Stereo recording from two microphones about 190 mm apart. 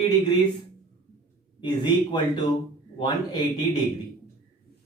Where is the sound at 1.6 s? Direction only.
25° left (ahead or behind).